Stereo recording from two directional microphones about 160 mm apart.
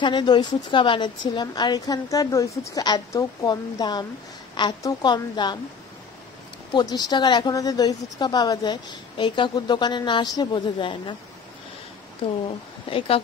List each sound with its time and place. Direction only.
0.0 s a woman's voice: 30° left (ahead or behind)
6.7 s a woman's voice: 25° left (ahead or behind)
12.4 s speech: 35° left (ahead or behind)